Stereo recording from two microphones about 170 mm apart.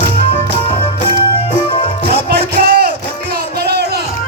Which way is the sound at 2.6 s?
65° right (ahead or behind).